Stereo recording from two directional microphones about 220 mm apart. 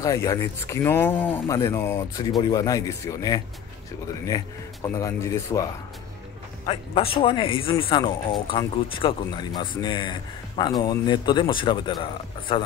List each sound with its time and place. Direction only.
0.0 s speech: 15° left (ahead or behind)
6.6 s speech: 25° left (ahead or behind)